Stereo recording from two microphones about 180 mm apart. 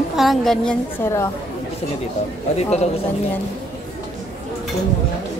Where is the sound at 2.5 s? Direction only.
40° left (ahead or behind).